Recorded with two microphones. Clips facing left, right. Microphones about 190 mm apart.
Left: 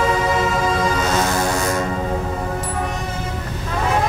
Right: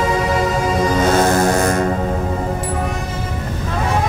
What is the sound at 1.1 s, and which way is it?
Music, 50° right (ahead or behind).